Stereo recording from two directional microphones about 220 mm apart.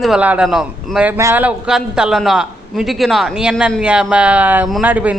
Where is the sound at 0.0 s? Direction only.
5° right (ahead or behind).